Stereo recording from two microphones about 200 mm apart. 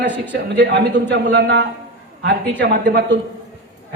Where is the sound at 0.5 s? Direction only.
60° right (ahead or behind).